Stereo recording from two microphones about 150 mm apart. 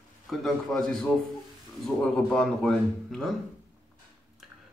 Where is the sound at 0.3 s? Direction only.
Centre (ahead or behind).